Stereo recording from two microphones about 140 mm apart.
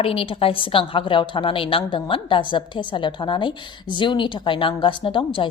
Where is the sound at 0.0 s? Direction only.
40° left (ahead or behind).